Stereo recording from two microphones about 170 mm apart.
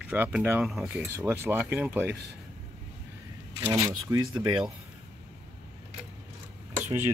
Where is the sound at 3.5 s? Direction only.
20° right (ahead or behind).